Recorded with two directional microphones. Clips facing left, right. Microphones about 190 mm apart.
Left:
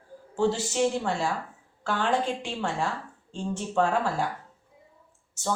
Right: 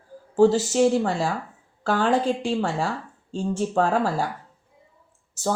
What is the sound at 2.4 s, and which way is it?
Speech, 35° right (ahead or behind).